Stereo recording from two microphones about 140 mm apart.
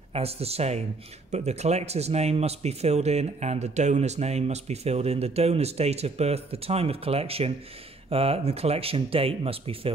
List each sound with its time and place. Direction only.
0.1 s speech: 45° right (ahead or behind)